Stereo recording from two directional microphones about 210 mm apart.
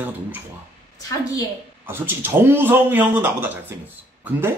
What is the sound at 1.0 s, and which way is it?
Speech, 15° left (ahead or behind).